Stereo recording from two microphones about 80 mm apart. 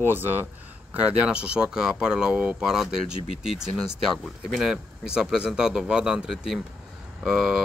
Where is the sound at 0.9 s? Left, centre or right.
Centre.